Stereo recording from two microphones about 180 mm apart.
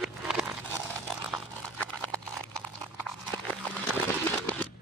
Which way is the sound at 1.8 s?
5° left (ahead or behind).